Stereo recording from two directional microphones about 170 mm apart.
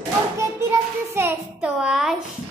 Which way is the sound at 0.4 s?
15° right (ahead or behind).